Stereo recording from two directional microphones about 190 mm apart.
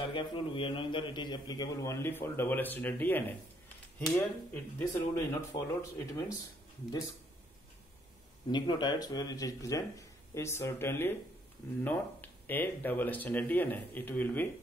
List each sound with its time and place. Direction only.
0.1 s a man's voice: 25° left (ahead or behind)
8.5 s a man's voice: 25° left (ahead or behind)